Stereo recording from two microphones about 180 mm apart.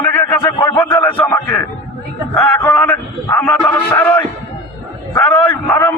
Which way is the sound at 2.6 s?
10° left (ahead or behind).